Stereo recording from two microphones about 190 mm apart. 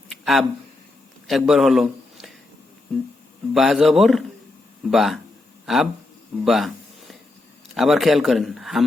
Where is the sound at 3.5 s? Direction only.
Centre (ahead or behind).